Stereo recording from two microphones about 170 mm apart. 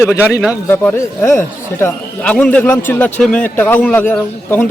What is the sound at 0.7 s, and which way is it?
Speech, 10° left (ahead or behind).